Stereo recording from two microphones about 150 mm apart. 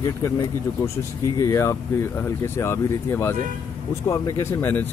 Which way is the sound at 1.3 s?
20° left (ahead or behind).